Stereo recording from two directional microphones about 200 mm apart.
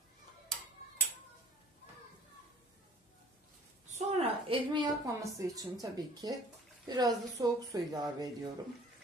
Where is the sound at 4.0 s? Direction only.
30° right (ahead or behind).